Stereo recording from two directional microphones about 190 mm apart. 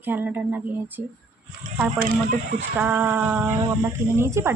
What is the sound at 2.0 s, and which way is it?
Speech, 45° right (ahead or behind).